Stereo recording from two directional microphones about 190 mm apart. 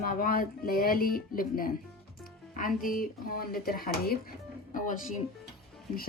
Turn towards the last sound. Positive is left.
turn(degrees=40)  # may be behind; listen again after turning